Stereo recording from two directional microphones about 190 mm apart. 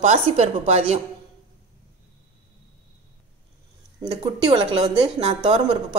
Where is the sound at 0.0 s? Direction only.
35° right (ahead or behind).